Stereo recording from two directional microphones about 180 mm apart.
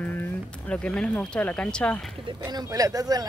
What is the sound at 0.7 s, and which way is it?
Speech, 5° left (ahead or behind).